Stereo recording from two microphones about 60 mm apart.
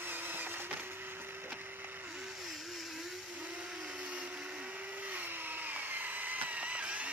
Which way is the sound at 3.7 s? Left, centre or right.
Centre.